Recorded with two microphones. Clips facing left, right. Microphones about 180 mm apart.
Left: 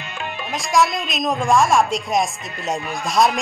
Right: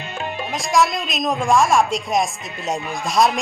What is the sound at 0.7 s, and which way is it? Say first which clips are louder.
Speech: even; centre (ahead or behind).